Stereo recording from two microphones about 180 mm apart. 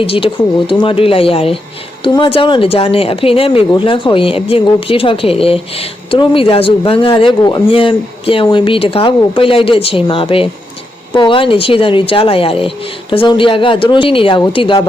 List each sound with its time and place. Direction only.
0.0 s speech: 30° left (ahead or behind)